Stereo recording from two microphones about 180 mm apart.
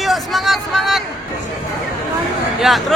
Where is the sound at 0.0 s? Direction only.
Centre (ahead or behind).